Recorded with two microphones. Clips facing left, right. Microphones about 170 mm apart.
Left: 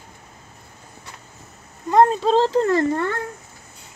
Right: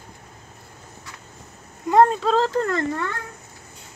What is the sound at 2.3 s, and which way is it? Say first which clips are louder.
Speech: left 3 dB; 30° left (ahead or behind).